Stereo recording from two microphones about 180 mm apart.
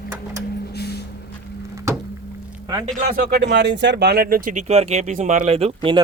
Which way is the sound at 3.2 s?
60° right (ahead or behind).